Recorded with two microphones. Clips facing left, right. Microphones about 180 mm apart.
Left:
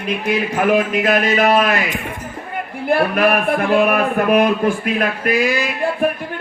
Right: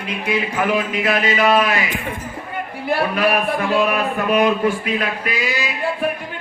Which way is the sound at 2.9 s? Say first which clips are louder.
Left 3 dB; 55° left (ahead or behind).